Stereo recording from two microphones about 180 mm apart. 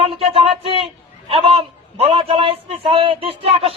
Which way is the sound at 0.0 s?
30° right (ahead or behind).